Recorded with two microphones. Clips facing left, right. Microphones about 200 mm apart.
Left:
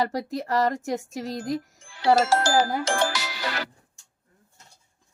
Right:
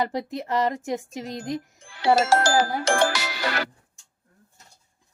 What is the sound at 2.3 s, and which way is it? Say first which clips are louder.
Speech: right 1 dB; 75° right (ahead or behind).